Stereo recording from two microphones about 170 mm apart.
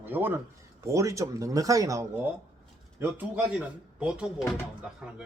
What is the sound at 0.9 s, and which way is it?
Speech, 20° right (ahead or behind).